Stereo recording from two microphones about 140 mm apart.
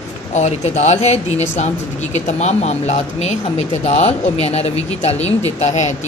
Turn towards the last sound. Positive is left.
turn(degrees=50)  # may be behind; listen again after turning